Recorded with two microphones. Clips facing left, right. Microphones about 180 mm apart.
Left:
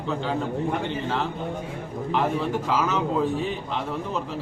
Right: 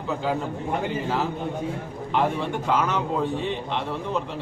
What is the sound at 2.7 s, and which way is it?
Speech, 5° left (ahead or behind).